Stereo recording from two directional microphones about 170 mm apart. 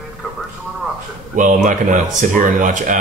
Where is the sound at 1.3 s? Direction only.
50° right (ahead or behind).